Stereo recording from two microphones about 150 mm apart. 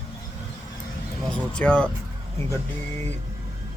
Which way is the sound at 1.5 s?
5° left (ahead or behind).